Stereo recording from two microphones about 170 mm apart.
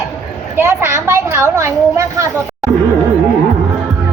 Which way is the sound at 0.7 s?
15° right (ahead or behind).